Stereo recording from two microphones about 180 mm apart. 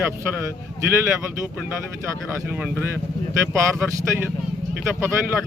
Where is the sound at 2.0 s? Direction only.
15° right (ahead or behind).